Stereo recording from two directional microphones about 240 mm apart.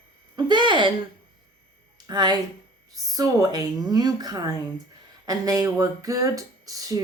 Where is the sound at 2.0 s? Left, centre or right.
Centre.